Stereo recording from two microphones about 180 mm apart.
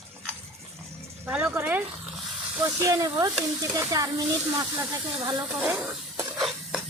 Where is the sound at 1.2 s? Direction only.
10° right (ahead or behind).